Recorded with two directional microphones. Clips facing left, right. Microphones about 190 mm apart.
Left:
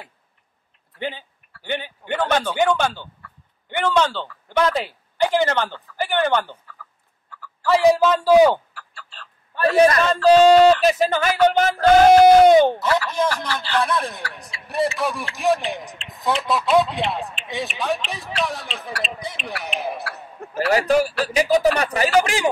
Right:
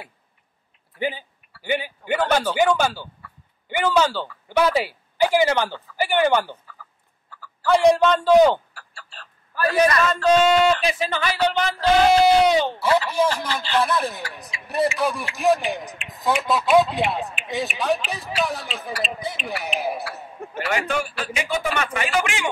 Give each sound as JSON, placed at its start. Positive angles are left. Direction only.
{"t": 0.9, "sound": "speech", "side_deg": -10}
{"t": 7.6, "sound": "a man's voice", "side_deg": 0}
{"t": 9.5, "sound": "a man's voice", "side_deg": 30}
{"t": 13.5, "sound": "speech", "side_deg": -20}
{"t": 13.7, "sound": "a man's voice", "side_deg": -5}
{"t": 20.7, "sound": "speech", "side_deg": 40}